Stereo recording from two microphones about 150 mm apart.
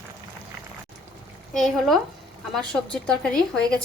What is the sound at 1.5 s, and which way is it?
Speech, 5° left (ahead or behind).